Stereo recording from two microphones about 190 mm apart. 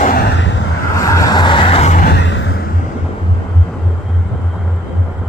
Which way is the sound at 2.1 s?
75° left (ahead or behind).